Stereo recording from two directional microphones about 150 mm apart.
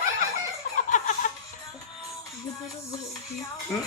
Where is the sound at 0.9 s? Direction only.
60° left (ahead or behind).